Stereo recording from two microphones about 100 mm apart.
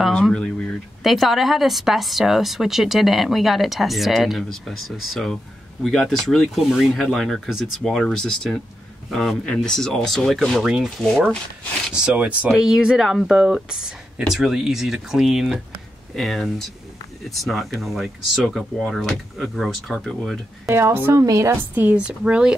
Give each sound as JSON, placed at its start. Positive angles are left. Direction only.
{"t": 0.1, "sound": "speech", "side_deg": 10}
{"t": 11.0, "sound": "speech", "side_deg": 5}
{"t": 11.9, "sound": "a woman's voice", "side_deg": -10}
{"t": 20.6, "sound": "a woman's voice", "side_deg": -25}
{"t": 21.7, "sound": "a woman's voice", "side_deg": -15}